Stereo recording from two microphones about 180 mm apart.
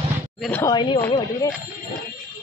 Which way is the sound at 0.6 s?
25° left (ahead or behind).